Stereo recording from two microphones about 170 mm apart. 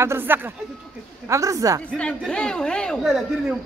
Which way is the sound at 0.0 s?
15° right (ahead or behind).